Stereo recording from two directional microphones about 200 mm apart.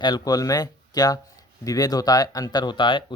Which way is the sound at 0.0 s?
20° left (ahead or behind).